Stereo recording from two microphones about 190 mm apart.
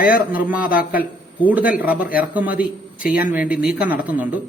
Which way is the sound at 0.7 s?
50° left (ahead or behind).